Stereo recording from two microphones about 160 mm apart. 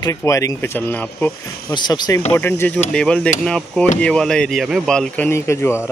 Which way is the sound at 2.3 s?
15° left (ahead or behind).